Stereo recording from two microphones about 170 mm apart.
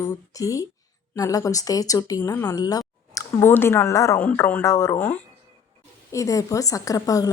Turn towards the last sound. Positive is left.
turn(degrees=20)  # may be behind; listen again after turning